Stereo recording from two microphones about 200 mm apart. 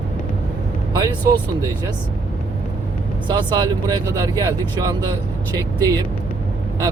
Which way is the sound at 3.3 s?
20° right (ahead or behind).